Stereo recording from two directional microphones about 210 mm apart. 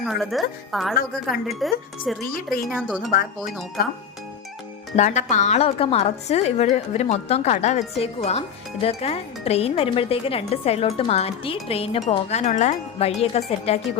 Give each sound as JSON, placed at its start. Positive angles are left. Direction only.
{"t": 0.0, "sound": "speech", "side_deg": 0}
{"t": 2.2, "sound": "speech", "side_deg": 45}
{"t": 2.6, "sound": "speech", "side_deg": -5}
{"t": 4.9, "sound": "a woman's voice", "side_deg": 35}